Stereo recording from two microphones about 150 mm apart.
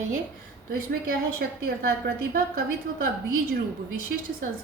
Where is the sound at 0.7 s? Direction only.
70° right (ahead or behind).